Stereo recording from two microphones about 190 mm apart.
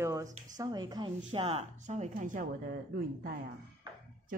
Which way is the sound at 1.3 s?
35° right (ahead or behind).